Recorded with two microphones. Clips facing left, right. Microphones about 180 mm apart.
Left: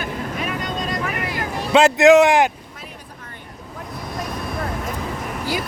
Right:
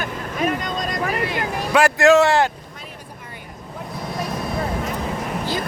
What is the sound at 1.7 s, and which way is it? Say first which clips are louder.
Speech: left 3 dB; 20° left (ahead or behind).